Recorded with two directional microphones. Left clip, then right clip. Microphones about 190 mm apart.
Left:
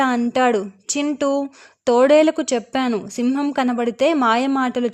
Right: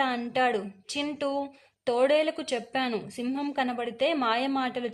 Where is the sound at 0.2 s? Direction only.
40° left (ahead or behind).